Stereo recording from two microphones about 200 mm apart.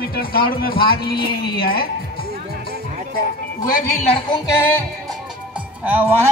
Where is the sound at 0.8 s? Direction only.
50° left (ahead or behind).